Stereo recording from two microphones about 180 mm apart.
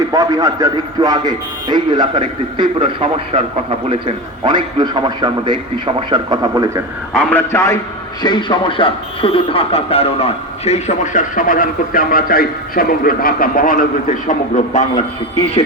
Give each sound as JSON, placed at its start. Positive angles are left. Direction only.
{"t": 0.1, "sound": "a man's voice", "side_deg": -20}
{"t": 7.1, "sound": "a man's voice", "side_deg": 5}
{"t": 8.2, "sound": "speech", "side_deg": 25}